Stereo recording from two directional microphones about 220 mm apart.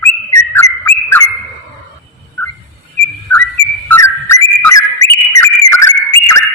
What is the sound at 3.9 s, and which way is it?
Whistle, 10° left (ahead or behind).